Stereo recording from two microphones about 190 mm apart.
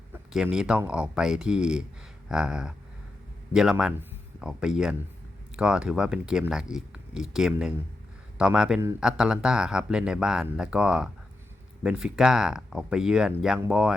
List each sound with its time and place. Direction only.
0.1 s speech: 5° right (ahead or behind)